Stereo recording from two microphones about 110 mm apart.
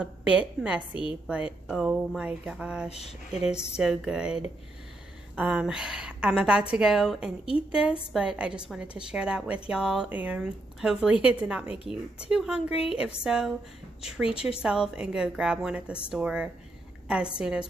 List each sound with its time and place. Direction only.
0.0 s a woman's voice: 10° right (ahead or behind)
2.9 s speech: 75° left (ahead or behind)
3.7 s a woman's voice: 5° right (ahead or behind)